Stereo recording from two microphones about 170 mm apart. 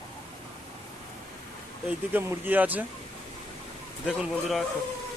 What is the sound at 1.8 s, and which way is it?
Speech, 15° right (ahead or behind).